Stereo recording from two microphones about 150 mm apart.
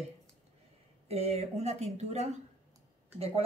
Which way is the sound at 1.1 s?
45° right (ahead or behind).